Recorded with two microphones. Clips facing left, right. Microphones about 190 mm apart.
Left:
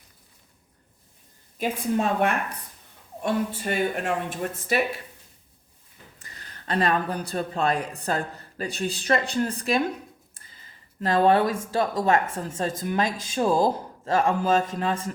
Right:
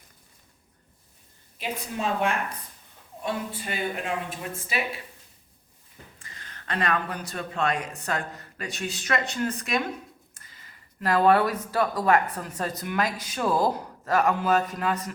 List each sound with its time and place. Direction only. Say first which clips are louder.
1.5 s speech: left 7 dB; 50° left (ahead or behind)
6.1 s speech: even; 40° left (ahead or behind)
11.0 s a man's voice: left 1 dB; 25° left (ahead or behind)